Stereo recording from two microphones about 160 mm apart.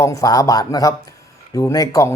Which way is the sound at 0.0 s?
20° left (ahead or behind).